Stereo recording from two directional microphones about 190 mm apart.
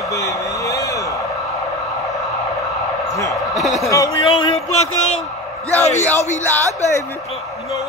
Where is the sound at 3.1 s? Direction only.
15° left (ahead or behind).